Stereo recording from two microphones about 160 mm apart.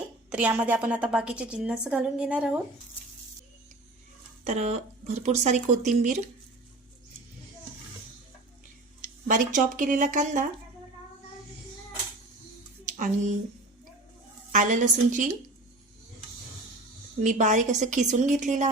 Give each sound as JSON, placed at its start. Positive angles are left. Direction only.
{"t": 0.3, "sound": "a woman's voice", "side_deg": -10}
{"t": 4.4, "sound": "a woman's voice", "side_deg": -45}
{"t": 9.0, "sound": "speech", "side_deg": -55}
{"t": 12.8, "sound": "a sound", "side_deg": -50}
{"t": 14.5, "sound": "a woman's voice", "side_deg": -50}
{"t": 17.2, "sound": "a woman's voice", "side_deg": -50}